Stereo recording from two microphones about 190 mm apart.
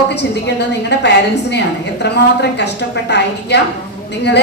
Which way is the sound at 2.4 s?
60° left (ahead or behind).